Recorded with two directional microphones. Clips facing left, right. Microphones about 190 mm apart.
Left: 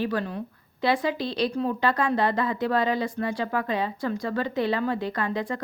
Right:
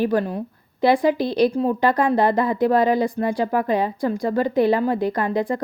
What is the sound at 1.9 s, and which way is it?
A woman's voice, 35° right (ahead or behind).